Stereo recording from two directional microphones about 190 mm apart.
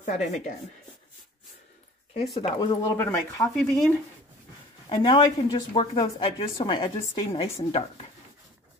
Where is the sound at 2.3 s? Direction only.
20° left (ahead or behind).